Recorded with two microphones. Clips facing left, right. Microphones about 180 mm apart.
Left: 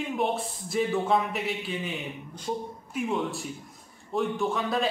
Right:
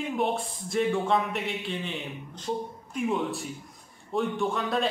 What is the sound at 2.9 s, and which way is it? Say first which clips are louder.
Speech: right 1 dB; centre (ahead or behind).